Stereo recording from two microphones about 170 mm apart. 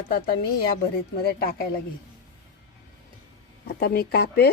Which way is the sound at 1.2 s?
65° left (ahead or behind).